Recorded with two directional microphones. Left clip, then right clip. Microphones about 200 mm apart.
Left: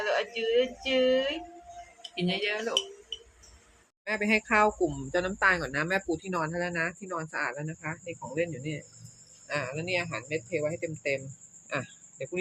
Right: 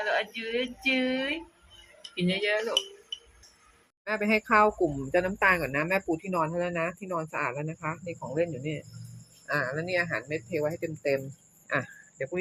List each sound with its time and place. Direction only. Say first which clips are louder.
0.1 s speech: left 5 dB; centre (ahead or behind)
4.0 s a woman's voice: even; centre (ahead or behind)
11.7 s a sound: right 4 dB; 5° left (ahead or behind)